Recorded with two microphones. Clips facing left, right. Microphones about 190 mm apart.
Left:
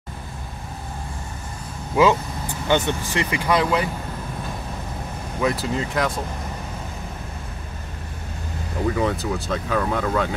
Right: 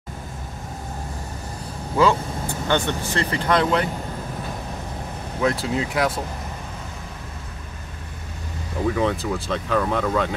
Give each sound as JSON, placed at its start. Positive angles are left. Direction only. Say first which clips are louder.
{"t": 2.7, "sound": "speech", "louder": "left 2 dB", "side_deg": 15}
{"t": 5.4, "sound": "speech", "louder": "right 1 dB", "side_deg": 0}
{"t": 8.8, "sound": "speech", "louder": "right 1 dB", "side_deg": 0}